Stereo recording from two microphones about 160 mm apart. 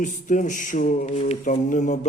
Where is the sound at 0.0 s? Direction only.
55° left (ahead or behind).